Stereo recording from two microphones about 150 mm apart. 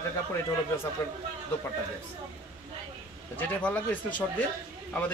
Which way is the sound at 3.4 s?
10° left (ahead or behind).